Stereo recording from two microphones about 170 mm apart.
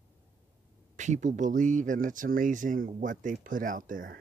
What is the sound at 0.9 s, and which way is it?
Speech, 45° right (ahead or behind).